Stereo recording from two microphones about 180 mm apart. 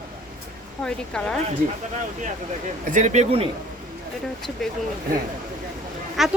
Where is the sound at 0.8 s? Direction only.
5° left (ahead or behind).